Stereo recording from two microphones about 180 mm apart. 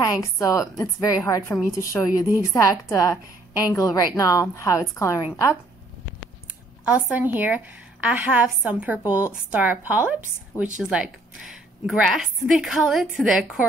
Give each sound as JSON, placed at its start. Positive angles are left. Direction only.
{"t": 0.0, "sound": "a woman's voice", "side_deg": 20}
{"t": 6.8, "sound": "a woman's voice", "side_deg": -5}